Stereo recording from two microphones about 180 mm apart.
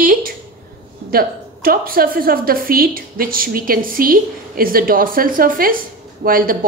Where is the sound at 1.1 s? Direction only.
55° right (ahead or behind).